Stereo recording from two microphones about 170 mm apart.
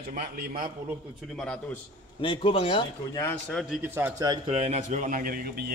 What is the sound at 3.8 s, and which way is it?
Speech, 15° right (ahead or behind).